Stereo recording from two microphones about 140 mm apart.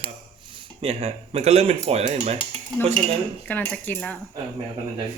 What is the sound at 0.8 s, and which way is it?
A man's voice, 45° right (ahead or behind).